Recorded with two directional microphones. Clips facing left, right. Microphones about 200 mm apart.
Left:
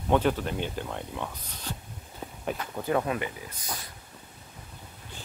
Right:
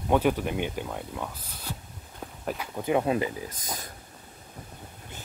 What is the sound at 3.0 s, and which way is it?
Speech, 25° right (ahead or behind).